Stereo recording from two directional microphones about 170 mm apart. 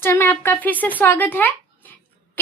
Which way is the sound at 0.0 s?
15° left (ahead or behind).